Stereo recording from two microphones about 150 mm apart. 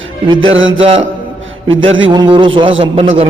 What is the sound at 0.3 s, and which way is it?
A man's voice, 35° right (ahead or behind).